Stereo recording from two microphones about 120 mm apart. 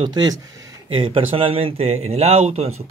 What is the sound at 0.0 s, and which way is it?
Speech, 35° right (ahead or behind).